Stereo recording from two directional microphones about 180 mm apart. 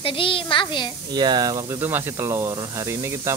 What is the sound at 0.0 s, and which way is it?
Speech, 30° left (ahead or behind).